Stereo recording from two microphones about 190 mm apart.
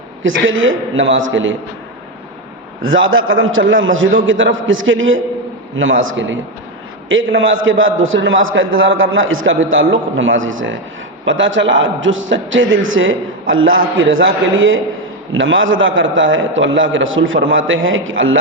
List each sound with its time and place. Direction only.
0.2 s a man's voice: 90° right
2.8 s a man's voice: 90° right
11.3 s a man's voice: 80° right